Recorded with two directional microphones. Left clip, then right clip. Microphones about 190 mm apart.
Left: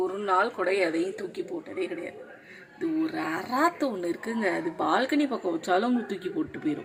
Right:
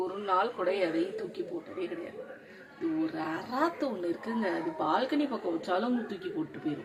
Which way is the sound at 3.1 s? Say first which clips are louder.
Left 4 dB; 25° left (ahead or behind).